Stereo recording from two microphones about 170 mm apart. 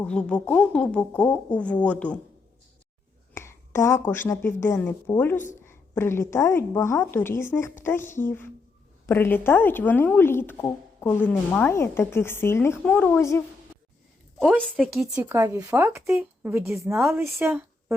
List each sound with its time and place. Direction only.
0.0 s a woman's voice: 5° left (ahead or behind)
3.3 s a woman's voice: 15° left (ahead or behind)
14.3 s a woman's voice: centre (ahead or behind)
15.1 s speech: 15° right (ahead or behind)
17.4 s a sound: 15° right (ahead or behind)